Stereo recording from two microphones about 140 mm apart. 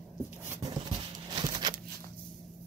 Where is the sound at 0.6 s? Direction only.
25° right (ahead or behind).